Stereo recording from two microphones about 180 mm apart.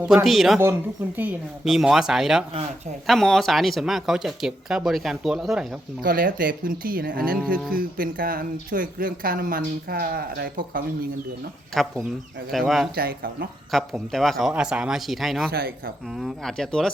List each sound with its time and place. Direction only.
0.0 s speech: 5° right (ahead or behind)
0.6 s speech: 10° right (ahead or behind)
6.0 s speech: 55° right (ahead or behind)
11.7 s speech: centre (ahead or behind)
13.0 s speech: 55° right (ahead or behind)
13.7 s speech: centre (ahead or behind)
15.5 s speech: 60° right (ahead or behind)
16.0 s speech: centre (ahead or behind)